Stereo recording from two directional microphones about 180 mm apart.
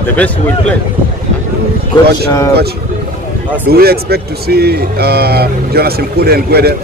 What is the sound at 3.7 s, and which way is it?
A man's voice, 60° right (ahead or behind).